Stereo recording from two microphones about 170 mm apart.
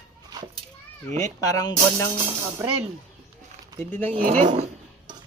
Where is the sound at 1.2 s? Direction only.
20° left (ahead or behind).